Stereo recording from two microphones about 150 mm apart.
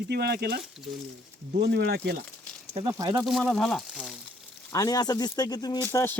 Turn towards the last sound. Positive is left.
turn(degrees=15)  # may be behind; listen again after turning